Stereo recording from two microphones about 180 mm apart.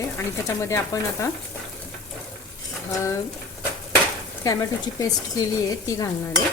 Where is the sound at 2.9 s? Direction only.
15° left (ahead or behind).